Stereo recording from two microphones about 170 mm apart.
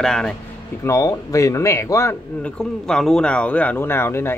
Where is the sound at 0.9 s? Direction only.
20° left (ahead or behind).